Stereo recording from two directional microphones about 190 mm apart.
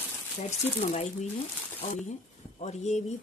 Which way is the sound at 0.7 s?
35° left (ahead or behind).